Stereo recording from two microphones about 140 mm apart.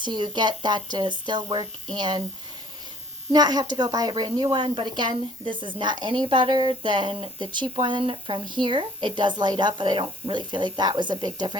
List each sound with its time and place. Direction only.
0.0 s a woman's voice: 35° right (ahead or behind)
3.3 s a woman's voice: 30° right (ahead or behind)